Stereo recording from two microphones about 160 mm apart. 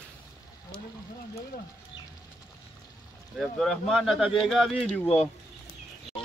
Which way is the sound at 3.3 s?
Centre (ahead or behind).